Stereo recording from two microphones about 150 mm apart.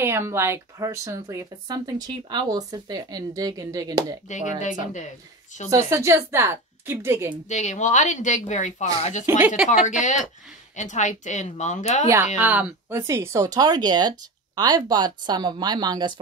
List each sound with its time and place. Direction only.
0.0 s speech: 15° right (ahead or behind)
4.3 s speech: 55° left (ahead or behind)
5.7 s a woman's voice: 20° right (ahead or behind)
7.4 s a woman's voice: 50° left (ahead or behind)
9.3 s a woman's voice: 15° right (ahead or behind)
9.7 s a woman's voice: 55° left (ahead or behind)
12.4 s speech: 10° right (ahead or behind); by 16.2 s 30° right (ahead or behind)